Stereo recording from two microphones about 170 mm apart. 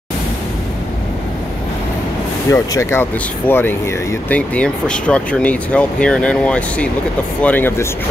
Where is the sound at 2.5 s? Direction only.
15° left (ahead or behind).